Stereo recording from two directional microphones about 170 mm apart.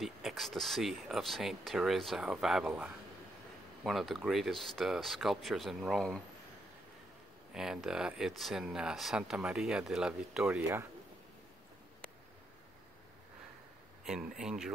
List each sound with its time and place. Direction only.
0.0 s speech: centre (ahead or behind)
7.5 s speech: 5° right (ahead or behind)
14.4 s speech: 5° right (ahead or behind)